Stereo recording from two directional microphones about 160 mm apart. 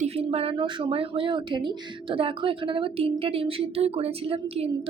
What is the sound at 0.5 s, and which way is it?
A woman's voice, 30° right (ahead or behind).